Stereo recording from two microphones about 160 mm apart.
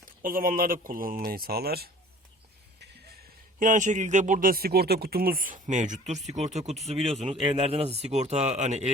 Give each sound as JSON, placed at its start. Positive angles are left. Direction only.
{"t": 0.2, "sound": "a man's voice", "side_deg": -60}
{"t": 3.6, "sound": "a man's voice", "side_deg": -55}